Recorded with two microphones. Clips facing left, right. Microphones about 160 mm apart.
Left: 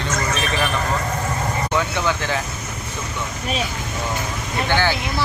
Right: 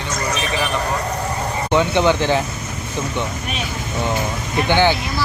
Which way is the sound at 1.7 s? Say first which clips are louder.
Right 9 dB; 25° right (ahead or behind).